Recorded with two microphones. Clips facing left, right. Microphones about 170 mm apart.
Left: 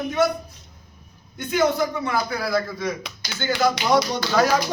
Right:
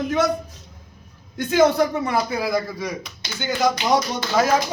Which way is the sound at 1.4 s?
90° right.